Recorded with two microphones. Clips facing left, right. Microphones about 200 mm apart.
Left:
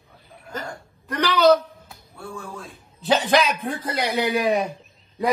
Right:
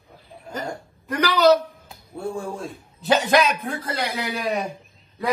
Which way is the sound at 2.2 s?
30° right (ahead or behind).